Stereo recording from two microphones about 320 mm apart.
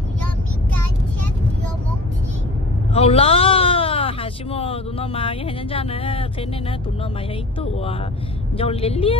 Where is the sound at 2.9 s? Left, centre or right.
Centre.